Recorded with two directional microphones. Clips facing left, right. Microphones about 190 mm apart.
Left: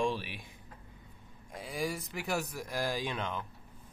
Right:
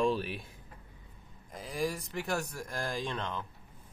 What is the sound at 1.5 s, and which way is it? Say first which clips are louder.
Speech: right 2 dB; centre (ahead or behind).